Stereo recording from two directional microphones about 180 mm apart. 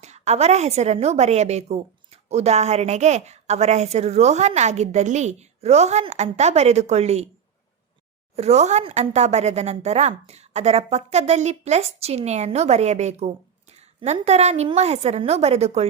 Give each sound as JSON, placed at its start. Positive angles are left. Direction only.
{"t": 0.0, "sound": "speech", "side_deg": -40}
{"t": 8.4, "sound": "speech", "side_deg": -40}